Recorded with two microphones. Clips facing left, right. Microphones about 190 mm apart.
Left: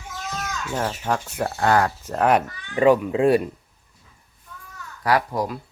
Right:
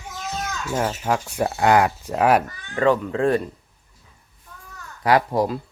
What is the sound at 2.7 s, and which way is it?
Speech, 10° left (ahead or behind).